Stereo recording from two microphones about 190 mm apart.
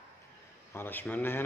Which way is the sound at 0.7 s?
10° left (ahead or behind).